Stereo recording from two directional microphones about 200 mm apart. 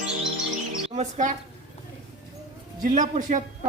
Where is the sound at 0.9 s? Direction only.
35° right (ahead or behind).